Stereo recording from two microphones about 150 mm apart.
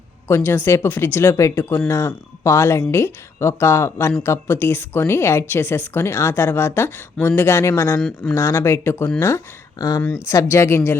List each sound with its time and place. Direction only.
0.3 s a woman's voice: 15° left (ahead or behind)
7.9 s speech: 5° left (ahead or behind)
8.4 s a woman's voice: 20° left (ahead or behind)
10.0 s a woman's voice: 10° left (ahead or behind)